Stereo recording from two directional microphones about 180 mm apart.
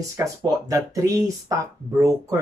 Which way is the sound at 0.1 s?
15° right (ahead or behind).